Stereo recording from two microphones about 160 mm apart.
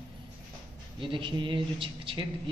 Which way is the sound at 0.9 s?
30° right (ahead or behind).